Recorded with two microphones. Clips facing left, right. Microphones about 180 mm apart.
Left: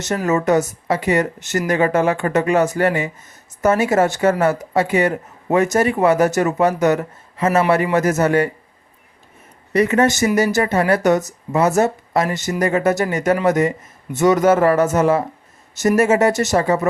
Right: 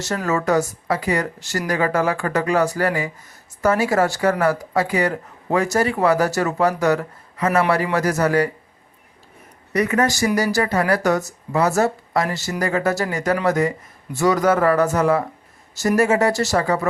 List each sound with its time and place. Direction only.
0.0 s speech: 20° left (ahead or behind)
9.7 s speech: 25° left (ahead or behind)